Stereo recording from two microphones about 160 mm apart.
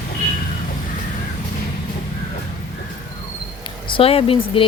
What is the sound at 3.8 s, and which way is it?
Speech, 35° left (ahead or behind).